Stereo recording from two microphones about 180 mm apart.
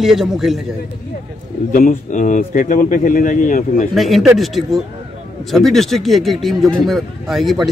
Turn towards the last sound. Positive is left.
turn(degrees=0)  # may be behind; listen again after turning